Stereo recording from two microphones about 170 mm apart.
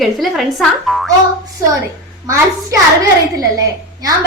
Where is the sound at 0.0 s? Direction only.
Centre (ahead or behind).